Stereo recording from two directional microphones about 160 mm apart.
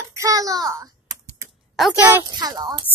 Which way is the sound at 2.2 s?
25° right (ahead or behind).